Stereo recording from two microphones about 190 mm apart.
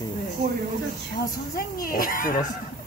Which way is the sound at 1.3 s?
50° left (ahead or behind).